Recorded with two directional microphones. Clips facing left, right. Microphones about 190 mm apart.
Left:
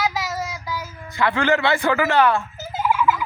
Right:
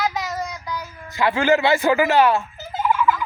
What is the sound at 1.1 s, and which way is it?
Speech, 20° right (ahead or behind).